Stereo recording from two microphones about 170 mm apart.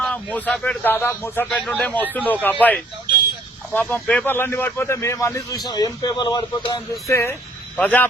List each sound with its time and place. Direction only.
0.0 s speech: 5° left (ahead or behind); by 6.8 s 25° left (ahead or behind)
7.1 s speech: 15° left (ahead or behind)